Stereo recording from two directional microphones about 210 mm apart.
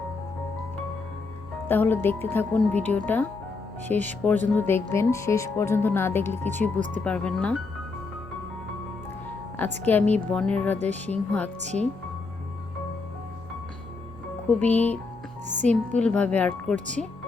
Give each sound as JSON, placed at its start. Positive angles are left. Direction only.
{"t": 1.6, "sound": "speech", "side_deg": 10}
{"t": 6.7, "sound": "speech", "side_deg": -35}
{"t": 7.0, "sound": "speech", "side_deg": 5}
{"t": 9.8, "sound": "speech", "side_deg": 5}
{"t": 14.6, "sound": "speech", "side_deg": 10}